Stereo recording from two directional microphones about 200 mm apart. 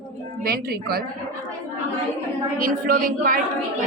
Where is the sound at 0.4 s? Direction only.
50° right (ahead or behind).